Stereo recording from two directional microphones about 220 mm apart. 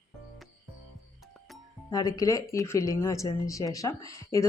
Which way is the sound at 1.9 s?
15° left (ahead or behind).